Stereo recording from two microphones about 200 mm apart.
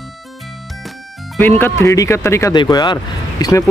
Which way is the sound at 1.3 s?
10° left (ahead or behind).